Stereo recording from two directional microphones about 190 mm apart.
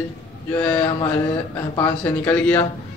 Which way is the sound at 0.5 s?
10° left (ahead or behind).